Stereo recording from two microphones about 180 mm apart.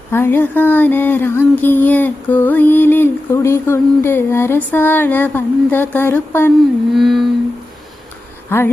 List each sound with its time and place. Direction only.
0.1 s a sound: 10° left (ahead or behind)
6.9 s carnatic music: centre (ahead or behind)
8.4 s speech: 15° left (ahead or behind)